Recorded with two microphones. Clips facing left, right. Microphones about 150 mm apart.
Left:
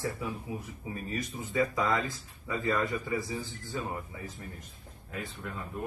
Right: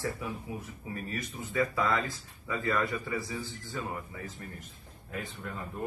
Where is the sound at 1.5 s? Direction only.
15° left (ahead or behind).